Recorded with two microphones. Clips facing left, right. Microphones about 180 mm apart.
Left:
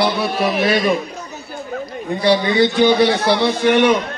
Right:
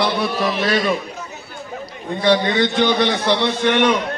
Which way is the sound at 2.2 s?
10° left (ahead or behind).